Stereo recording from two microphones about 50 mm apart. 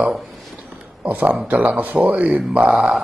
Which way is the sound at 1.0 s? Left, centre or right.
Right.